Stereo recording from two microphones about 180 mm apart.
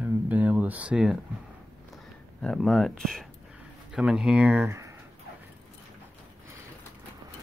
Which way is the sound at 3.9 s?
5° right (ahead or behind).